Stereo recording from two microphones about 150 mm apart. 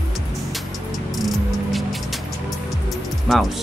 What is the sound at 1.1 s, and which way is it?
Music, centre (ahead or behind).